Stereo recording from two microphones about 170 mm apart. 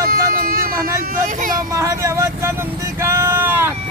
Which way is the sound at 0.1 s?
60° right (ahead or behind).